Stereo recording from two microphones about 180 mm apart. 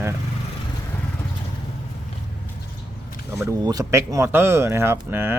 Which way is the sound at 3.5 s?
20° right (ahead or behind).